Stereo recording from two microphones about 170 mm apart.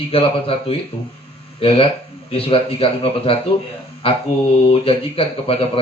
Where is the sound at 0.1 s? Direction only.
35° left (ahead or behind).